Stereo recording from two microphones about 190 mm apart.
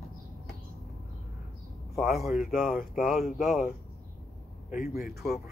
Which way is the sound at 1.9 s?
Centre (ahead or behind).